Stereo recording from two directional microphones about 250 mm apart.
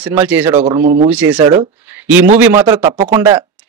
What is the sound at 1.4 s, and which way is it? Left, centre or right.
Speech, centre.